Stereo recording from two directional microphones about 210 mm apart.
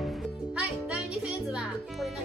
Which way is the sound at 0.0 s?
Centre (ahead or behind).